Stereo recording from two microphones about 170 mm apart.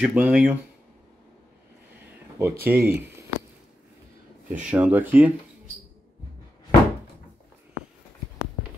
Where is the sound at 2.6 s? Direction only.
10° right (ahead or behind).